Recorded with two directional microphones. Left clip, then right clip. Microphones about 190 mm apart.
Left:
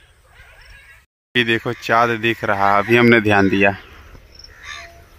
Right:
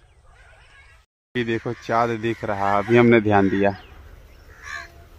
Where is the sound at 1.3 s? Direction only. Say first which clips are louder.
Left 7 dB; centre (ahead or behind).